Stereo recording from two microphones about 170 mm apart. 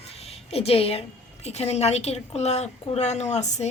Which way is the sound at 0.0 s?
35° left (ahead or behind).